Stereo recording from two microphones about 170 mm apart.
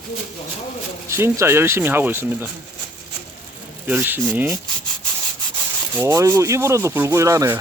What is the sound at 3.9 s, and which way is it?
Speech, 10° right (ahead or behind).